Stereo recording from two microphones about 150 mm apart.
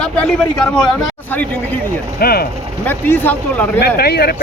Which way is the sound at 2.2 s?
90° left.